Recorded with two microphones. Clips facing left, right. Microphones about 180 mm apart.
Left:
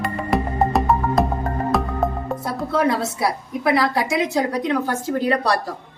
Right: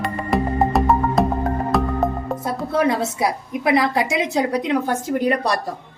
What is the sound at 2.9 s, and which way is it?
A woman's voice, 20° right (ahead or behind).